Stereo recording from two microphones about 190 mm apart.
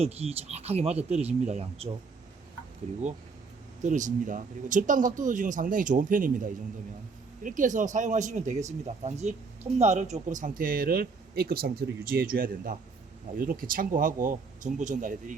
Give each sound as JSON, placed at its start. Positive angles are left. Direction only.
{"t": 0.0, "sound": "speech", "side_deg": -35}
{"t": 3.8, "sound": "speech", "side_deg": -40}